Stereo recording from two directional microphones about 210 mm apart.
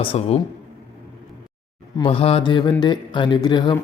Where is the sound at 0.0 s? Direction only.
25° left (ahead or behind).